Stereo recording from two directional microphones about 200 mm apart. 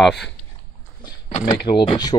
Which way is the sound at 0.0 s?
Centre (ahead or behind).